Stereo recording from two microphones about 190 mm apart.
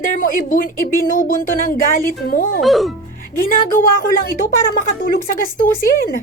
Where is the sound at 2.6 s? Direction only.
Centre (ahead or behind).